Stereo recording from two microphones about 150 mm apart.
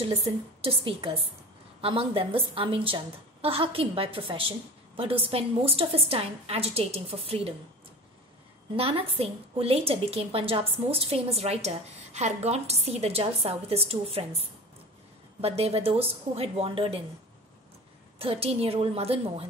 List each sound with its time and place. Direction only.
0.6 s a woman's voice: 40° right (ahead or behind)
8.7 s a woman's voice: 40° right (ahead or behind)
15.4 s a woman's voice: 40° right (ahead or behind)
18.2 s a woman's voice: 40° right (ahead or behind)